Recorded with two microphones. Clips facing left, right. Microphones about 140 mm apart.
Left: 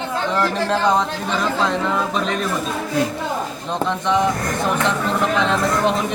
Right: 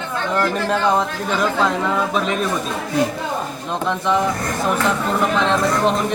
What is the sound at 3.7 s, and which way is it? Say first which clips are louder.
Speech: even; 5° right (ahead or behind).